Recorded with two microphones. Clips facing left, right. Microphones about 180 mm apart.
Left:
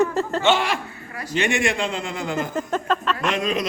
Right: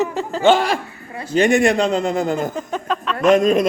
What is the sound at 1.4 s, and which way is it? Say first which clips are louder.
Speech: right 8 dB; 40° right (ahead or behind).